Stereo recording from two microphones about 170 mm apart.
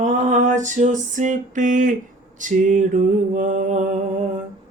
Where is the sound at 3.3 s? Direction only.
50° right (ahead or behind).